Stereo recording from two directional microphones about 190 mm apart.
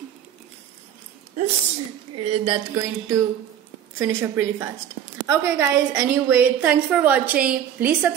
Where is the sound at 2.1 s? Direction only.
30° right (ahead or behind).